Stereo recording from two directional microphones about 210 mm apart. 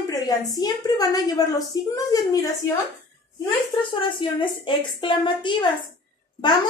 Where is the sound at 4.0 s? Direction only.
25° left (ahead or behind).